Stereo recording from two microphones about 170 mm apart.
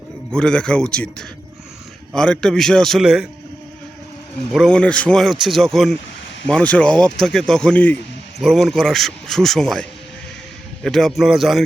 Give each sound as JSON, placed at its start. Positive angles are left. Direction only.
{"t": 0.3, "sound": "a man's voice", "side_deg": 5}
{"t": 2.1, "sound": "a man's voice", "side_deg": 5}
{"t": 4.5, "sound": "a man's voice", "side_deg": 5}
{"t": 10.8, "sound": "a man's voice", "side_deg": 0}